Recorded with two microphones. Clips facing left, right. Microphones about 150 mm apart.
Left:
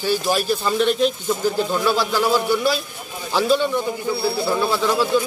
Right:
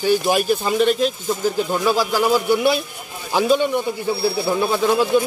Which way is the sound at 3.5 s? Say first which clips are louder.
Right 1 dB; 15° right (ahead or behind).